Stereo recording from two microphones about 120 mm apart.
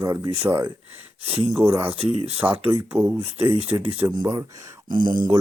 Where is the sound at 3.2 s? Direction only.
60° right (ahead or behind).